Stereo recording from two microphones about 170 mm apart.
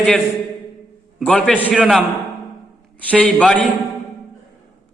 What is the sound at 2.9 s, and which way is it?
Speech, 5° left (ahead or behind).